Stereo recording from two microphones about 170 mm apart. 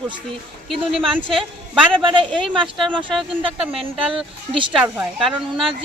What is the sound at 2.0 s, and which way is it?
Speech, 30° right (ahead or behind).